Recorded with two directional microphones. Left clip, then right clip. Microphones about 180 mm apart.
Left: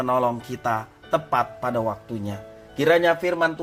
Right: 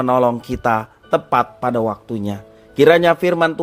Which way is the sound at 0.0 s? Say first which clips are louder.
Right 6 dB; 40° right (ahead or behind).